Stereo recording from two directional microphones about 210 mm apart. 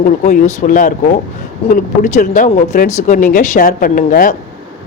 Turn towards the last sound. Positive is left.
turn(degrees=40)  # may be behind; listen again after turning